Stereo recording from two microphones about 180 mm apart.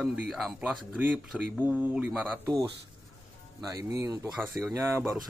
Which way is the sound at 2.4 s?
20° right (ahead or behind).